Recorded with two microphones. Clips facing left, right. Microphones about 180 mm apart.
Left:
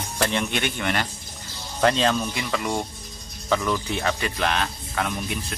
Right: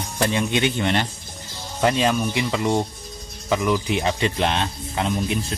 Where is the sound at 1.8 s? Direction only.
10° right (ahead or behind).